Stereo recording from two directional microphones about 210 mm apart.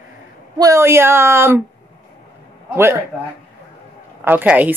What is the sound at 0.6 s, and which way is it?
Speech, 15° right (ahead or behind).